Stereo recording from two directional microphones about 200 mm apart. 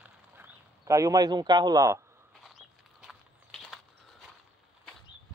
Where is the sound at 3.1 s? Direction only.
Centre (ahead or behind).